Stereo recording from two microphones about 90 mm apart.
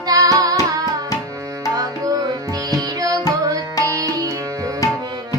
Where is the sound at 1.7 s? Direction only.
45° right (ahead or behind).